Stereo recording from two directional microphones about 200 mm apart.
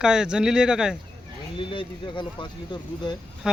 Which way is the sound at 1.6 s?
25° left (ahead or behind).